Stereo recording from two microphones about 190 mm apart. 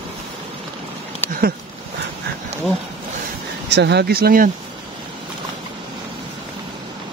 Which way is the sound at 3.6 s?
65° right (ahead or behind).